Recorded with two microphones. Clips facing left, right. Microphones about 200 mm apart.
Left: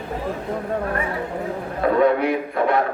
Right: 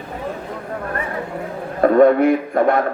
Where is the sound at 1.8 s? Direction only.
50° right (ahead or behind).